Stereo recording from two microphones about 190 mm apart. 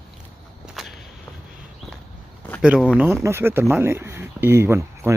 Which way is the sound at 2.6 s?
5° right (ahead or behind).